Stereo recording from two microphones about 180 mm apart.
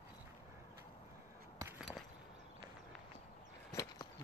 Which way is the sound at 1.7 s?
Centre (ahead or behind).